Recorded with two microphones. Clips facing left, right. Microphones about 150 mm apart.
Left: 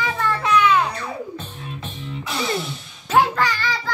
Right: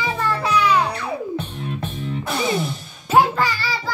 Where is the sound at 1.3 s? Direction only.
60° right (ahead or behind).